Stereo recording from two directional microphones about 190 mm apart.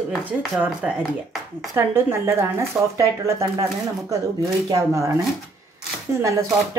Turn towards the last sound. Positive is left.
turn(degrees=-15)  # may be behind; listen again after turning